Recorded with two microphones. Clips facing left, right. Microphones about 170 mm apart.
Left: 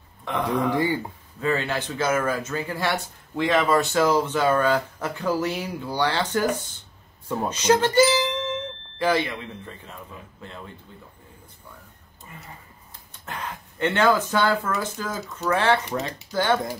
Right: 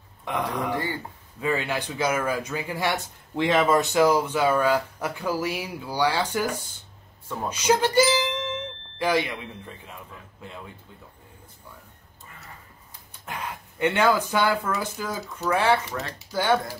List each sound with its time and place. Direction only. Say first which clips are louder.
0.2 s a man's voice: left 4 dB; 10° right (ahead or behind)
0.7 s speech: left 6 dB; 15° left (ahead or behind)
1.4 s speech: left 1 dB; 10° right (ahead or behind)
7.4 s music: left 2 dB; 10° right (ahead or behind)
9.0 s speech: left 1 dB; 15° right (ahead or behind)
13.1 s speech: even; 10° right (ahead or behind)
15.9 s speech: left 4 dB; 20° left (ahead or behind)
16.3 s speech: even; 10° right (ahead or behind)